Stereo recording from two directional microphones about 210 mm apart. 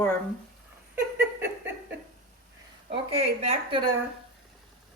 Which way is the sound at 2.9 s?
30° right (ahead or behind).